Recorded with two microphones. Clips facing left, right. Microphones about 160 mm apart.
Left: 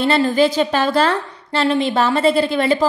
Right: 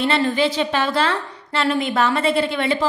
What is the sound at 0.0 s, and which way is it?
A woman's voice, 35° left (ahead or behind).